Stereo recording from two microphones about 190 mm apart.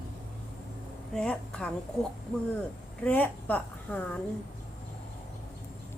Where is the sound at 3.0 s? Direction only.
10° left (ahead or behind).